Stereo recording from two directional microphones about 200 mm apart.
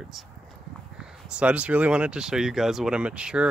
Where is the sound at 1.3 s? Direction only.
5° right (ahead or behind).